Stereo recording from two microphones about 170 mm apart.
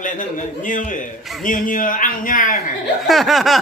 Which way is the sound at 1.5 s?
50° left (ahead or behind).